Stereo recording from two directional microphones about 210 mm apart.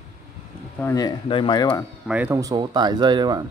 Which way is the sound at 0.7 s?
15° left (ahead or behind).